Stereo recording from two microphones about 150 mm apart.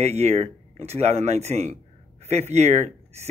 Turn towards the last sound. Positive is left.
turn(degrees=-45)  # may be behind; listen again after turning